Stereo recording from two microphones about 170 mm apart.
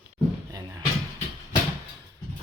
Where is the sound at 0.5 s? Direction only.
20° right (ahead or behind).